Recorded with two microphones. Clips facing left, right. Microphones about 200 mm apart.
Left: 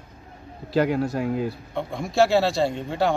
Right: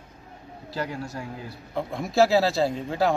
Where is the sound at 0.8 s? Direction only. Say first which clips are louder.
Left 10 dB; 60° left (ahead or behind).